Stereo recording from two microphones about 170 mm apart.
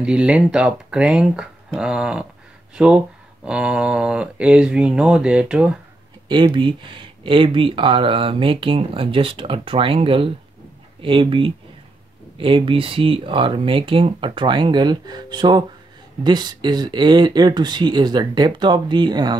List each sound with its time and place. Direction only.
0.0 s speech: 5° right (ahead or behind)
6.2 s speech: 25° right (ahead or behind)